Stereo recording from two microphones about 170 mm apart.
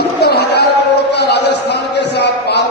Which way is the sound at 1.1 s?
80° left.